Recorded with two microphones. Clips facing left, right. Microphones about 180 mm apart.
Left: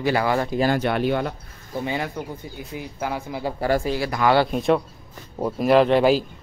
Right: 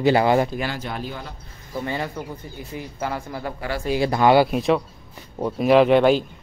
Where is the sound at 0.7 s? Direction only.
70° left (ahead or behind).